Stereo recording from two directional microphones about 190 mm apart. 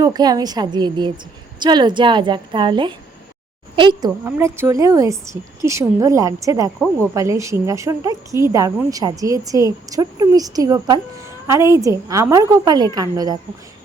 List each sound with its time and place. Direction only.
0.0 s a woman's voice: 20° right (ahead or behind)
4.2 s a woman's voice: 15° right (ahead or behind)